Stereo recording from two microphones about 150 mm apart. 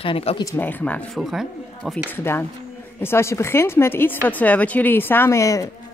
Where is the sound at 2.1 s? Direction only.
15° left (ahead or behind).